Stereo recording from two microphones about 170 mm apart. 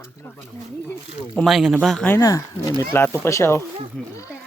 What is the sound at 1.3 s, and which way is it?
Speech, centre (ahead or behind).